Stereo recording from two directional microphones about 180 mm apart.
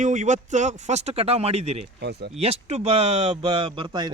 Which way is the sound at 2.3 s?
35° right (ahead or behind).